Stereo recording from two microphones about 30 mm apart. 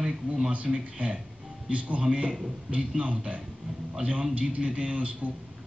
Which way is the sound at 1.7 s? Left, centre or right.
Right.